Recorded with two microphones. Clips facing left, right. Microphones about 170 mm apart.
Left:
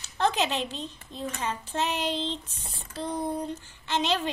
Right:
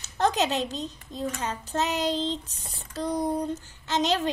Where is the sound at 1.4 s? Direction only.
40° right (ahead or behind).